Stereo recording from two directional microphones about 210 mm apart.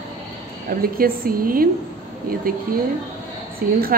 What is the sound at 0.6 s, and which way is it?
A woman's voice, 45° right (ahead or behind).